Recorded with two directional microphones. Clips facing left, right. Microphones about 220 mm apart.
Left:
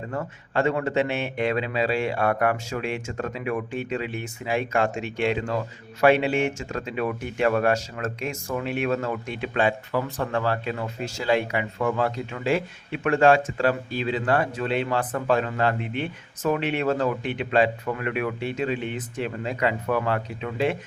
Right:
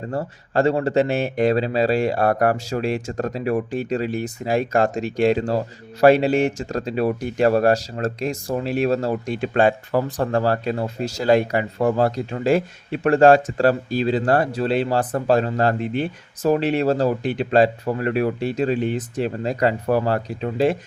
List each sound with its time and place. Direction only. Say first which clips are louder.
0.1 s speech: right 5 dB; 35° right (ahead or behind)